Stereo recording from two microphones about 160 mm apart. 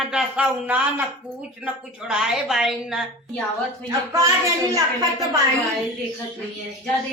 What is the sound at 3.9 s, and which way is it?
A woman's voice, 20° right (ahead or behind).